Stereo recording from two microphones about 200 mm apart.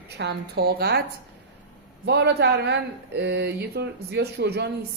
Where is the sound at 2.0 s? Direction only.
55° right (ahead or behind).